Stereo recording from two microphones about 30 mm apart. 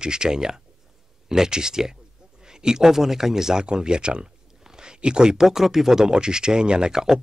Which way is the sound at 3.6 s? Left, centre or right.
Right.